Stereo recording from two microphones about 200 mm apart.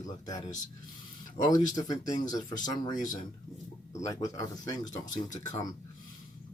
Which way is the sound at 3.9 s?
15° left (ahead or behind).